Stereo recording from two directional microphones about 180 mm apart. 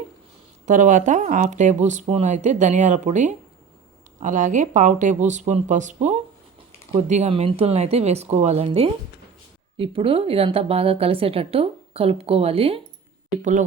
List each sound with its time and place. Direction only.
0.6 s a woman's voice: 45° right (ahead or behind)